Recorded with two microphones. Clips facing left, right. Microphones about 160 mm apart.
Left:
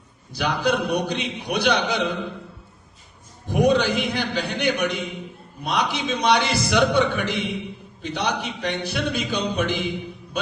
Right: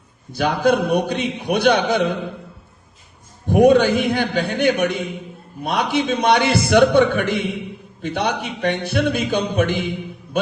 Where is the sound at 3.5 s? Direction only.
55° right (ahead or behind).